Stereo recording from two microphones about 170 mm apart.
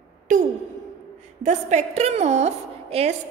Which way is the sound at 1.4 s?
45° right (ahead or behind).